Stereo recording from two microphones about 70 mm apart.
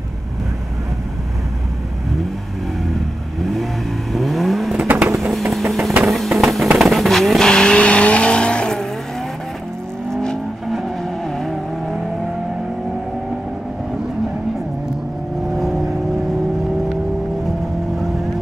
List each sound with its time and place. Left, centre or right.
4.1 s vehicle: centre
4.7 s vehicle: right
5.1 s vehicle: centre
10.1 s vehicle: centre
17.5 s vehicle: centre